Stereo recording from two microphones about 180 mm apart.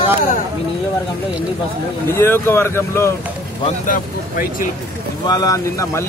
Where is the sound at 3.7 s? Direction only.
50° left (ahead or behind).